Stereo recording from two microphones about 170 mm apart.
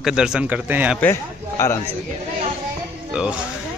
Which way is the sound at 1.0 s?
15° left (ahead or behind).